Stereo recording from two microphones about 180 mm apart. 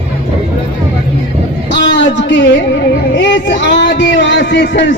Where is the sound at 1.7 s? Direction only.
75° left (ahead or behind).